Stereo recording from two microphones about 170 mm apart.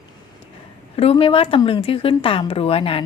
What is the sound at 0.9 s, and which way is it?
A woman's voice, 35° left (ahead or behind).